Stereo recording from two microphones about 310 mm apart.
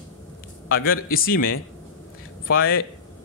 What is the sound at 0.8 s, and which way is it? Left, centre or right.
Speech, left.